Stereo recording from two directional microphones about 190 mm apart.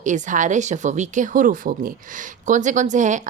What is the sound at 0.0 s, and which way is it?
Speech, 40° right (ahead or behind).